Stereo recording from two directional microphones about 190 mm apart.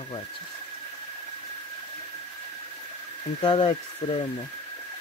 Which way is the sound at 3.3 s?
25° left (ahead or behind).